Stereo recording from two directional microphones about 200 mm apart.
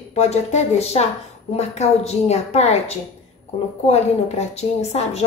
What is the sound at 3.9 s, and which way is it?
Speech, 30° left (ahead or behind).